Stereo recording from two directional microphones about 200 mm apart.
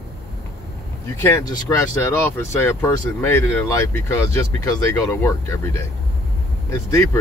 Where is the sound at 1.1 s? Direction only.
15° left (ahead or behind).